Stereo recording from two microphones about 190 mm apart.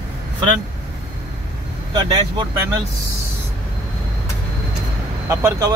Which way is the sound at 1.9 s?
25° right (ahead or behind).